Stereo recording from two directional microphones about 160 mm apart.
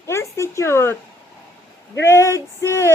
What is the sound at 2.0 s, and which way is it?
Speech, 15° left (ahead or behind).